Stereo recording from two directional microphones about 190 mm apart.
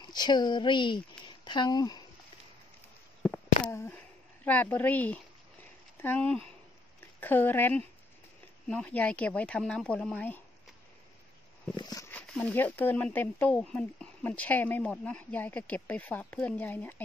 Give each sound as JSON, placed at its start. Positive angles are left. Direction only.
{"t": 0.0, "sound": "speech", "side_deg": 20}
{"t": 3.2, "sound": "a sound", "side_deg": 5}
{"t": 3.6, "sound": "speech", "side_deg": 10}
{"t": 11.7, "sound": "speech", "side_deg": 20}
{"t": 12.1, "sound": "speech", "side_deg": 5}